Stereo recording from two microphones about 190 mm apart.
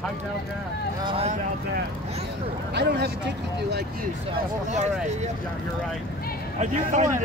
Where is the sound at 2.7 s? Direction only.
65° right (ahead or behind).